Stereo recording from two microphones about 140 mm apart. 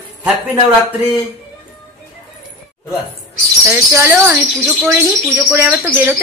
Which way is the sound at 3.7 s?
15° right (ahead or behind).